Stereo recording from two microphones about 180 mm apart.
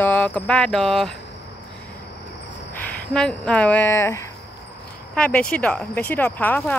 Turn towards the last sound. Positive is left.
turn(degrees=10)  # may be behind; listen again after turning